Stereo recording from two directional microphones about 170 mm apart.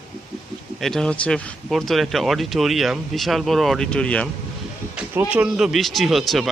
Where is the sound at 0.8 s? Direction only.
5° left (ahead or behind).